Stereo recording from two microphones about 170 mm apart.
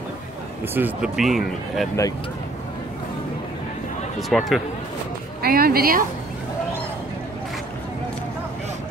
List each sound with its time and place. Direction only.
0.7 s speech: 5° right (ahead or behind)
4.3 s speech: centre (ahead or behind)
5.4 s speech: 60° right (ahead or behind)